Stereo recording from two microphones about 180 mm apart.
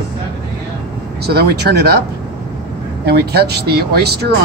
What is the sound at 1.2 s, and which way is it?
Speech, 60° right (ahead or behind).